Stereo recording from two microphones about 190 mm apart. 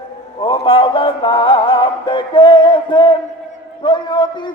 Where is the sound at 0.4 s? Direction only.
25° left (ahead or behind).